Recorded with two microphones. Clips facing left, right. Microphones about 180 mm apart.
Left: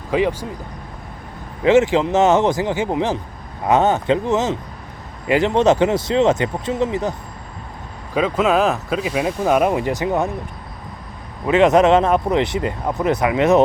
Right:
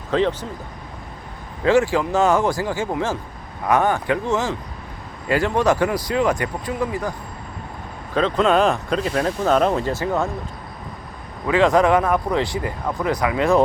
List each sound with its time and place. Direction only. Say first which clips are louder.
0.1 s speech: left 1 dB; 10° left (ahead or behind)
1.6 s speech: left 3 dB; 20° left (ahead or behind)
8.1 s speech: even; 5° left (ahead or behind)
11.4 s speech: left 3 dB; 20° left (ahead or behind)